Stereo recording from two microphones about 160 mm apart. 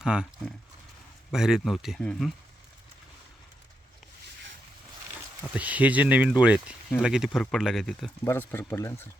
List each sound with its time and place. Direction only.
0.0 s speech: 5° right (ahead or behind)
1.3 s speech: 5° right (ahead or behind)
5.5 s speech: 10° right (ahead or behind)
8.2 s speech: 15° left (ahead or behind)